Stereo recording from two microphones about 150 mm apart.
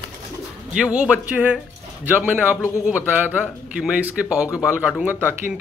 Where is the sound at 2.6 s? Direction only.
20° left (ahead or behind).